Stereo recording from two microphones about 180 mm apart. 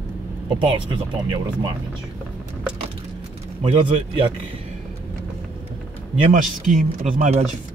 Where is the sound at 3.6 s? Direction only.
30° right (ahead or behind).